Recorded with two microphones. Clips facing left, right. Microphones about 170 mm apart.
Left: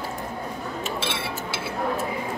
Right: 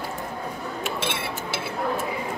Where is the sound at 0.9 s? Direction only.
50° right (ahead or behind).